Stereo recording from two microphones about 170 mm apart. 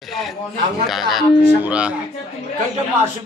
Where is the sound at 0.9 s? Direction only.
Centre (ahead or behind).